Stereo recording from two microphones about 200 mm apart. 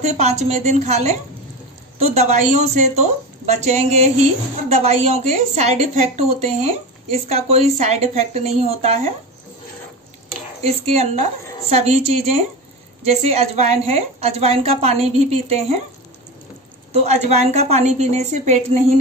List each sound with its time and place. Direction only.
0.0 s a woman's voice: 35° right (ahead or behind)
10.6 s a woman's voice: 30° right (ahead or behind)
16.9 s a woman's voice: 35° right (ahead or behind)